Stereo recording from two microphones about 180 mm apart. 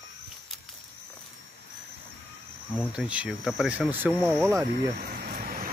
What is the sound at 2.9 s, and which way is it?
Speech, 5° right (ahead or behind).